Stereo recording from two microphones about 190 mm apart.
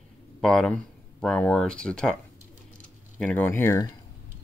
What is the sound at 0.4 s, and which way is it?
Speech, 5° left (ahead or behind).